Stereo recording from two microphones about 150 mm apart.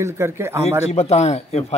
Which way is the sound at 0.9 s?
45° left (ahead or behind).